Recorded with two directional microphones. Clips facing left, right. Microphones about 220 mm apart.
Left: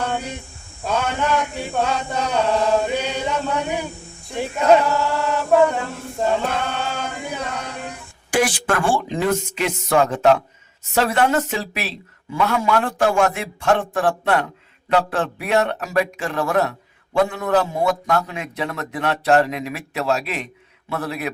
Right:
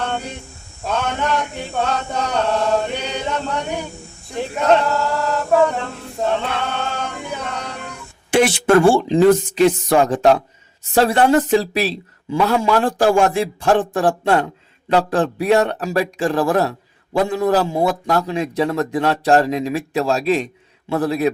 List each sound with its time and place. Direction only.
0.0 s a sound: 10° left (ahead or behind)
0.9 s chant: 10° left (ahead or behind)
8.3 s speech: 25° right (ahead or behind)